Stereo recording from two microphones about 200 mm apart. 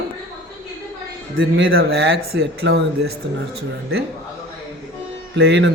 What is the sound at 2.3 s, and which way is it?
Speech, 55° right (ahead or behind).